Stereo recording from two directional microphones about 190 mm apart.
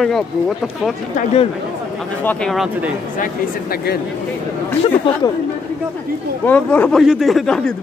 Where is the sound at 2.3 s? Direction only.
5° left (ahead or behind).